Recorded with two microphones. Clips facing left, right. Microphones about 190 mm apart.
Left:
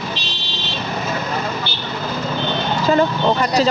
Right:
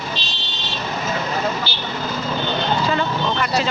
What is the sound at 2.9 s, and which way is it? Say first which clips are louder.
Speech: left 6 dB; 40° left (ahead or behind).